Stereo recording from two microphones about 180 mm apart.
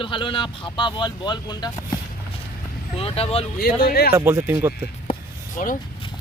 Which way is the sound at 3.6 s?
55° left (ahead or behind).